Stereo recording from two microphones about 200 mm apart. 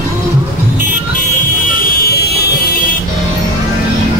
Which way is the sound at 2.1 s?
55° left (ahead or behind).